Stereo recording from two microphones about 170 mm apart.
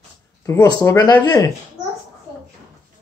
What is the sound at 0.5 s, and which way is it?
Speech, 20° left (ahead or behind).